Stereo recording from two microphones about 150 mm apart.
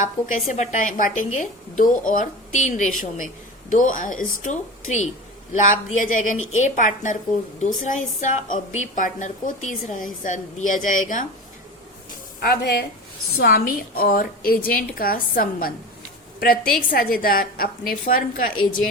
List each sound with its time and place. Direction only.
0.0 s a woman's voice: 55° left (ahead or behind)
12.4 s a woman's voice: 90° left; by 18.5 s 70° left (ahead or behind)